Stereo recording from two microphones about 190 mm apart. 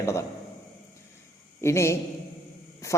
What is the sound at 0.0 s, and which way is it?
Speech, 15° left (ahead or behind).